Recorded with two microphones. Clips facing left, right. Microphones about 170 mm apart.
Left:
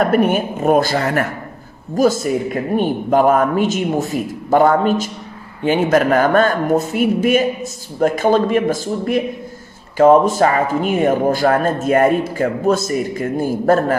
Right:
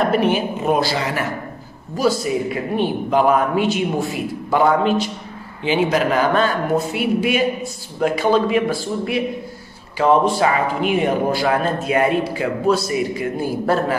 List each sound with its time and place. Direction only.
0.0 s speech: 50° left (ahead or behind)